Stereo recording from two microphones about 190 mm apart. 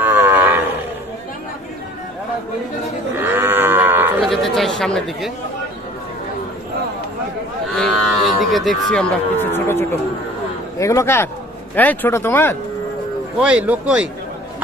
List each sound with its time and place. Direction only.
0.0 s cattle: 10° right (ahead or behind)
3.2 s livestock: 10° right (ahead or behind)
4.2 s chatter: centre (ahead or behind)
7.7 s cattle: centre (ahead or behind)
9.4 s speech: 10° left (ahead or behind)
13.4 s cattle: 5° right (ahead or behind)